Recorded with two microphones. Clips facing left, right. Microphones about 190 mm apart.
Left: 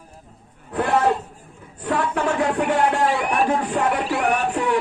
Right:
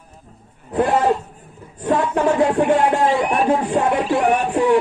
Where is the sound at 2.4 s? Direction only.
25° right (ahead or behind).